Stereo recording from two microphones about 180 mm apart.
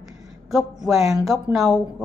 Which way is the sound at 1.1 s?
Centre (ahead or behind).